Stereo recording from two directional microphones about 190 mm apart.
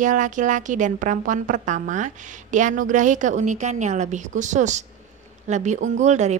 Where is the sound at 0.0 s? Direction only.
40° right (ahead or behind).